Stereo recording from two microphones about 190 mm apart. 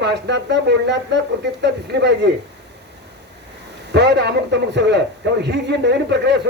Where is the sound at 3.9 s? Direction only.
65° right (ahead or behind).